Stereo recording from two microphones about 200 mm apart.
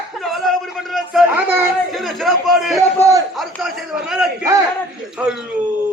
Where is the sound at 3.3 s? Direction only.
Centre (ahead or behind).